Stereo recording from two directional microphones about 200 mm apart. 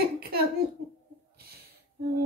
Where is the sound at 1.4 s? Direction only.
50° right (ahead or behind).